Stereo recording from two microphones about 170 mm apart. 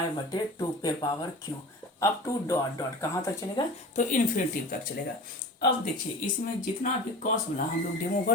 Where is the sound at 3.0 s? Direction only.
20° left (ahead or behind).